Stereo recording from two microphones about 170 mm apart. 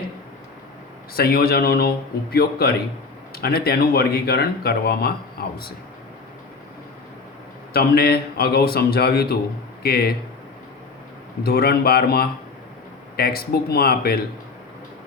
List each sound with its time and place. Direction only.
1.1 s speech: 65° left (ahead or behind)
7.7 s speech: 65° left (ahead or behind)
11.4 s speech: 65° left (ahead or behind)